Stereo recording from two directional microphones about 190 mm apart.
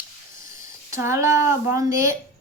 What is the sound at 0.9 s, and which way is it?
A woman's voice, 15° right (ahead or behind).